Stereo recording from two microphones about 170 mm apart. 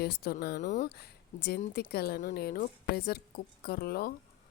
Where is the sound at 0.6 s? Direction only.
45° left (ahead or behind).